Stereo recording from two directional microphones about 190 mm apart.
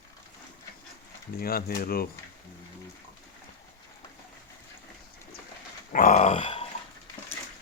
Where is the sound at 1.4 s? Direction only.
50° left (ahead or behind).